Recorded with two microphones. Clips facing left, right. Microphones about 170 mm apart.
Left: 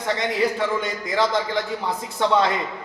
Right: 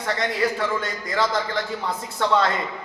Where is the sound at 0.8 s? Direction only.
15° left (ahead or behind).